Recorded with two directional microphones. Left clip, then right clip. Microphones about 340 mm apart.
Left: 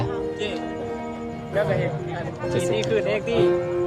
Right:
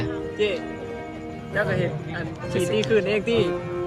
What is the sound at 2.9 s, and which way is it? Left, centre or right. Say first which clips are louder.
Speech: right 1 dB; right.